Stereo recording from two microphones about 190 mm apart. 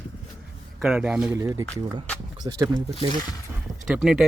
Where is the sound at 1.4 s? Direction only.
15° right (ahead or behind).